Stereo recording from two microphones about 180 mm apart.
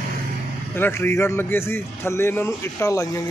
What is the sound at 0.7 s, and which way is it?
Speech, 10° left (ahead or behind).